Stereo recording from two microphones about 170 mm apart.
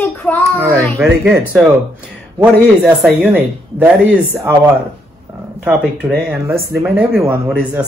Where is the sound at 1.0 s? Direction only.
Centre (ahead or behind).